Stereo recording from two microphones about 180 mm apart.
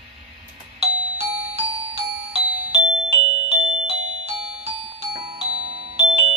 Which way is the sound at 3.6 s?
35° right (ahead or behind).